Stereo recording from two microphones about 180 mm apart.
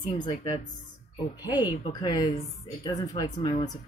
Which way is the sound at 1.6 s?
20° left (ahead or behind).